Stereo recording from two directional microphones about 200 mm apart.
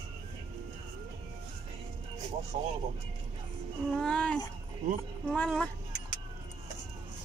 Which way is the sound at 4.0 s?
5° left (ahead or behind).